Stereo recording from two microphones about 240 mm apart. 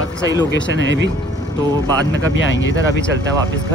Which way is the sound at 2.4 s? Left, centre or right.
Left.